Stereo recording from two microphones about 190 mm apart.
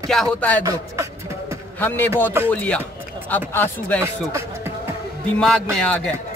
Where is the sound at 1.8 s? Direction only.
10° left (ahead or behind).